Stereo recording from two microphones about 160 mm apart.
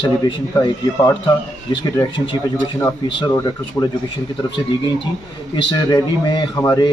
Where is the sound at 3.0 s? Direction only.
30° left (ahead or behind).